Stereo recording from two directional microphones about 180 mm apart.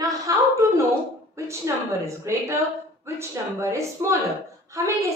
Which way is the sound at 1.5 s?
15° right (ahead or behind).